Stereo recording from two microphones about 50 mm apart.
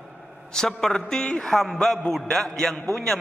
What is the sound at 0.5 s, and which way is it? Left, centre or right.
A man's voice, centre.